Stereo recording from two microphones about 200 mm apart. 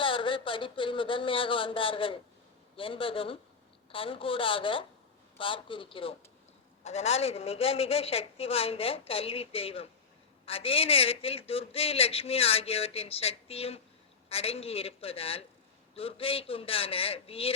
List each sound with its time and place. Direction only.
0.0 s a man's voice: 25° left (ahead or behind)